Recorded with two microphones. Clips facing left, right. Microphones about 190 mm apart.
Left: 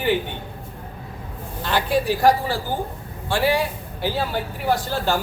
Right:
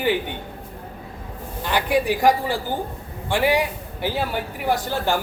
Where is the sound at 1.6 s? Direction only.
15° right (ahead or behind).